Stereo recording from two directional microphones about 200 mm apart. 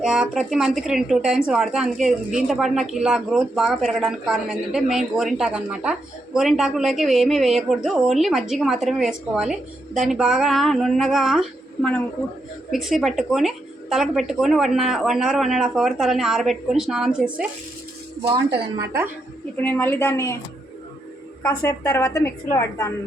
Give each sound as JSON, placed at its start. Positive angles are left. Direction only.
{"t": 0.0, "sound": "speech", "side_deg": -5}
{"t": 19.6, "sound": "a woman's voice", "side_deg": 10}
{"t": 21.4, "sound": "a woman's voice", "side_deg": 15}